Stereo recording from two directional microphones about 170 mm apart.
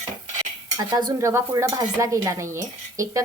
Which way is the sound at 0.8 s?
25° right (ahead or behind).